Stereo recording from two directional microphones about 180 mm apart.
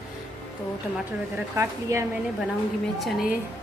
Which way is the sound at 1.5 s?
15° right (ahead or behind).